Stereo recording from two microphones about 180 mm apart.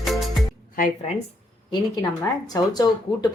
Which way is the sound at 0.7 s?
50° left (ahead or behind).